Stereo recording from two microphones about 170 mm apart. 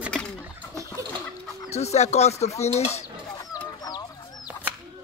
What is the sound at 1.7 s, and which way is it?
Speech, 40° left (ahead or behind).